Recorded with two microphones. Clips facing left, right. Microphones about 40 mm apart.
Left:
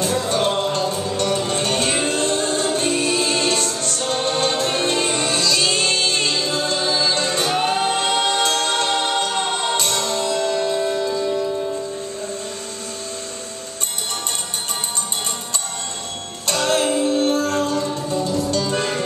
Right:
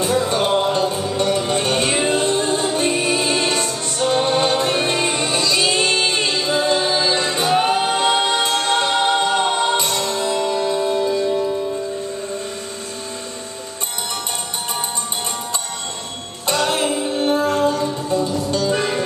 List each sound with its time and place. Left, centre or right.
0.0 s music: centre
10.6 s music: centre
16.4 s music: centre